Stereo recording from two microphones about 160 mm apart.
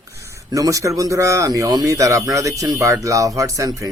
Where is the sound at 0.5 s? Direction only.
20° right (ahead or behind).